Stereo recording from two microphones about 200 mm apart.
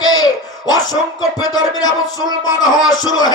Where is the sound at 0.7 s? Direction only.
20° left (ahead or behind).